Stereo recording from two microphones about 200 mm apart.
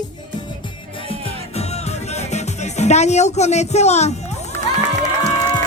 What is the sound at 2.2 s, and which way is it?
Speech, 35° left (ahead or behind).